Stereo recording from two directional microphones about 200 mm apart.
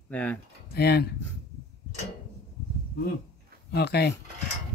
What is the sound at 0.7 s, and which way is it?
Speech, 55° left (ahead or behind).